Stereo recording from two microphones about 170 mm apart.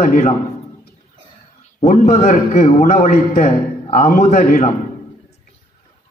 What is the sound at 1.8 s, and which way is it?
A man's voice, 45° left (ahead or behind).